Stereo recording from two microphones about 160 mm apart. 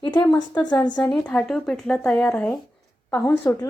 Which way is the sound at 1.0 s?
5° left (ahead or behind).